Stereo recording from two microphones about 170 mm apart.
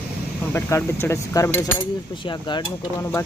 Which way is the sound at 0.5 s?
15° left (ahead or behind).